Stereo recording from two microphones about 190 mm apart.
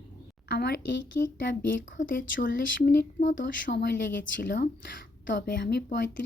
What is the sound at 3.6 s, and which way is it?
Speech, 65° left (ahead or behind).